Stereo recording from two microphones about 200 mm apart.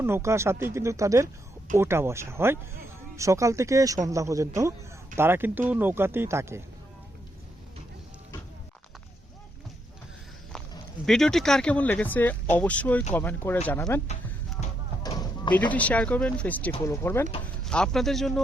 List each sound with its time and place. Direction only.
0.0 s speech: 15° right (ahead or behind)
11.0 s speech: centre (ahead or behind)
15.0 s a sound: 20° left (ahead or behind)
15.7 s speech: 5° left (ahead or behind)